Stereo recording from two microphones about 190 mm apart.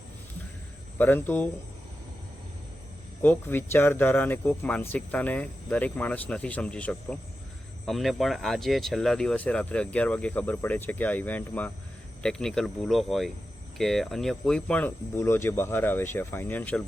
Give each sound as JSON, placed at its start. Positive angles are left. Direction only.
{"t": 0.9, "sound": "speech", "side_deg": 10}
{"t": 3.2, "sound": "speech", "side_deg": 10}